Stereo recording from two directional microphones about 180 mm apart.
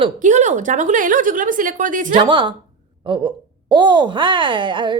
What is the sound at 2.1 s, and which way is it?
Speech, 30° right (ahead or behind).